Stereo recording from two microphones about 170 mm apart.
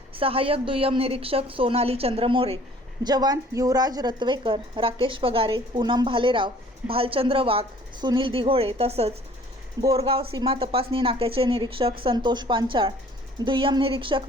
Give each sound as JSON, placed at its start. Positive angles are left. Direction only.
{"t": 0.1, "sound": "a woman's voice", "side_deg": -35}